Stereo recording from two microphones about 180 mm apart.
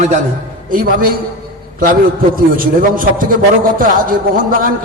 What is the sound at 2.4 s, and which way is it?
A man's voice, 50° right (ahead or behind).